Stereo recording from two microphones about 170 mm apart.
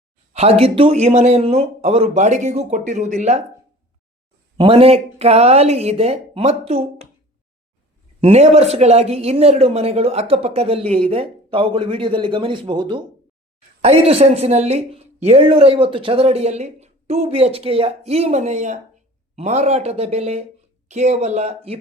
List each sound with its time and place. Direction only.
0.3 s a woman's voice: 35° right (ahead or behind)
4.5 s a woman's voice: 35° right (ahead or behind)
8.2 s a woman's voice: 40° right (ahead or behind)